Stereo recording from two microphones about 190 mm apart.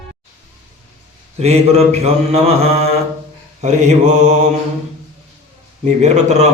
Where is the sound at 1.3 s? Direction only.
35° right (ahead or behind).